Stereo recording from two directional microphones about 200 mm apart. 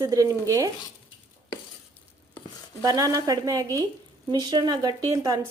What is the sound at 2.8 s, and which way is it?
A woman's voice, 20° right (ahead or behind).